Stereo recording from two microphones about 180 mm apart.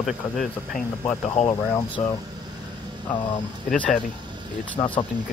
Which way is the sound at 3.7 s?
Centre (ahead or behind).